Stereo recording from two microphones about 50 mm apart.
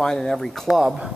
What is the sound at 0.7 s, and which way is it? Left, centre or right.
Speech, centre.